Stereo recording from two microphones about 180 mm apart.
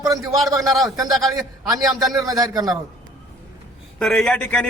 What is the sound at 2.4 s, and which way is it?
Speech, 20° right (ahead or behind).